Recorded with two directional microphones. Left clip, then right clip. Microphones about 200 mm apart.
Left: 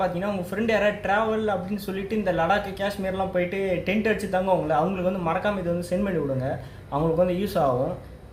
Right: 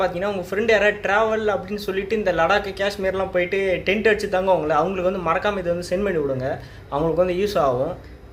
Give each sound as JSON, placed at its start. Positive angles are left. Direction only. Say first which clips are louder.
{"t": 0.0, "sound": "a man's voice", "louder": "right 4 dB", "side_deg": -5}